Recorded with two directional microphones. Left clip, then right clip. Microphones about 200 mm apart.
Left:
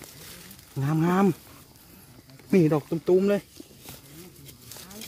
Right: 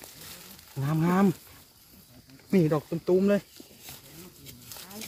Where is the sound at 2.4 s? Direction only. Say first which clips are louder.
Left 3 dB; 45° left (ahead or behind).